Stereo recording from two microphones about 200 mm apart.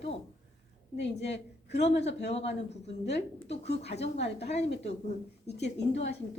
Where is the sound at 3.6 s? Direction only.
30° left (ahead or behind).